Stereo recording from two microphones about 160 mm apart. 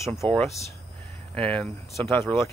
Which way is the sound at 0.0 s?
20° left (ahead or behind).